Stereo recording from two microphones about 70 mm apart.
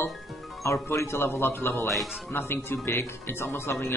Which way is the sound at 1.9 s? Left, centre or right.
Centre.